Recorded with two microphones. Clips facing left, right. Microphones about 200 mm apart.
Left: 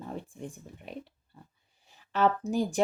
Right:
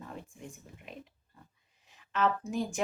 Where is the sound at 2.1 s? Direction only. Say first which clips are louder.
Left 4 dB; 35° left (ahead or behind).